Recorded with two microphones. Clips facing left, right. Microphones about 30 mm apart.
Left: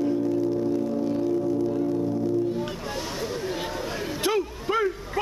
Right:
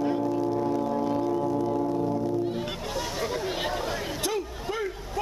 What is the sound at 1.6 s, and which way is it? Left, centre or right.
Music, centre.